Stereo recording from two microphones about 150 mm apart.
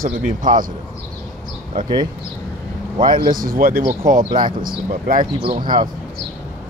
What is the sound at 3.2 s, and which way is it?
Speech, 70° right (ahead or behind).